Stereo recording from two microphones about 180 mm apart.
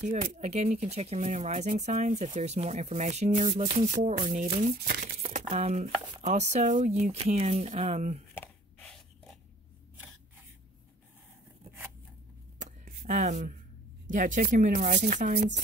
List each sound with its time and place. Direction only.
0.0 s speech: 45° right (ahead or behind)
4.7 s speech: 60° right (ahead or behind)
5.5 s speech: 35° right (ahead or behind)
8.4 s gasp: 5° left (ahead or behind)
12.5 s a sound: 45° right (ahead or behind)
14.0 s speech: 45° right (ahead or behind)